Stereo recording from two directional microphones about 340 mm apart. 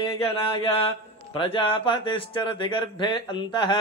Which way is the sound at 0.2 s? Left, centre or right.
Centre.